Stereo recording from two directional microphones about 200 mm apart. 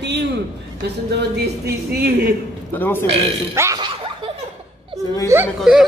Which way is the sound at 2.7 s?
10° left (ahead or behind).